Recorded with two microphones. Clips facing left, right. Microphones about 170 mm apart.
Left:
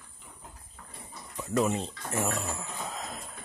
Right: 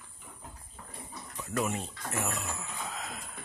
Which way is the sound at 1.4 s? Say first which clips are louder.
Left 5 dB; 25° left (ahead or behind).